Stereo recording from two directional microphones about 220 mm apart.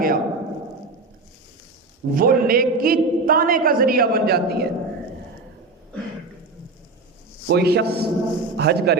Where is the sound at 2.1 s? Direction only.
40° right (ahead or behind).